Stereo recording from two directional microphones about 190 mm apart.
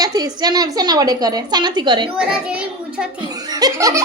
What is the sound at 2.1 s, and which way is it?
Speech, 5° right (ahead or behind).